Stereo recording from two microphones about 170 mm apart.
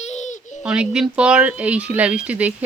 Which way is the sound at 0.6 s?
5° right (ahead or behind).